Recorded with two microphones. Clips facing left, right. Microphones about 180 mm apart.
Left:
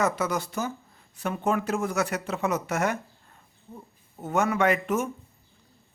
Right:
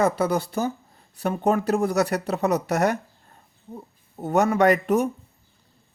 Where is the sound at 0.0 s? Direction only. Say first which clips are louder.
Right 5 dB; 35° right (ahead or behind).